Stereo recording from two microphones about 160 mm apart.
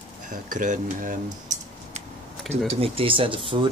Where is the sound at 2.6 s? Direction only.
35° right (ahead or behind).